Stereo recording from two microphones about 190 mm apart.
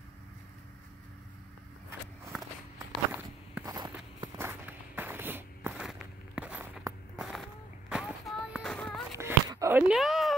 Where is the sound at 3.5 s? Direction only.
20° right (ahead or behind).